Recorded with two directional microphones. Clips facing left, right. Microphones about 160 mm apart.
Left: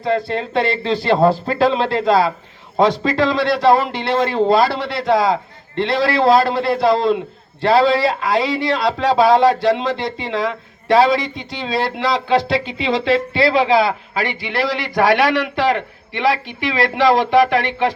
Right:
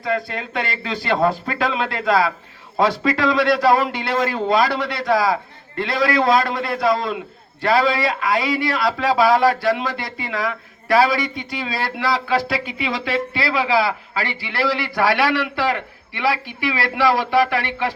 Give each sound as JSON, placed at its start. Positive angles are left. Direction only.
{"t": 0.0, "sound": "speech", "side_deg": 25}